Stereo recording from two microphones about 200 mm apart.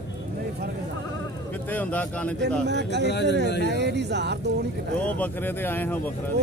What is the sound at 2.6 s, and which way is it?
Speech, 60° right (ahead or behind).